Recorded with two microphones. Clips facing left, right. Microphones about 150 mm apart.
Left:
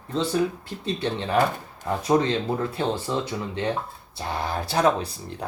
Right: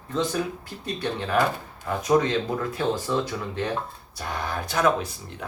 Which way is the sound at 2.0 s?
30° left (ahead or behind).